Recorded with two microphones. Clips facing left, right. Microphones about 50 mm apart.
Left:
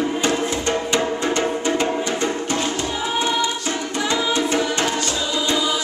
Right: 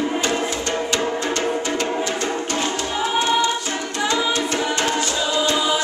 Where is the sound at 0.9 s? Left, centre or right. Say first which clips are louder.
Left 2 dB; centre.